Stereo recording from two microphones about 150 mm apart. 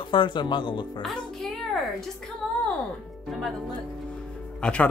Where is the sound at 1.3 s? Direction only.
Centre (ahead or behind).